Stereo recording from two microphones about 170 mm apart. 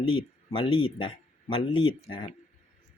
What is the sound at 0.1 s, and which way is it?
Speech, 30° left (ahead or behind).